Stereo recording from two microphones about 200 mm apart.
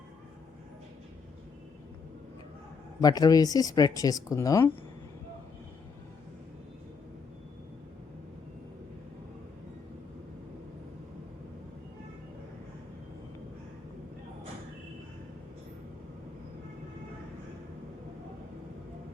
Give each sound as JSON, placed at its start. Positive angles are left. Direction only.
{"t": 3.0, "sound": "speech", "side_deg": 20}